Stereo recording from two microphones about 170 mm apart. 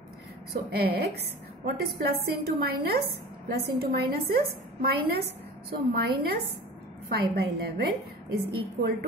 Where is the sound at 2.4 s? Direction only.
65° right (ahead or behind).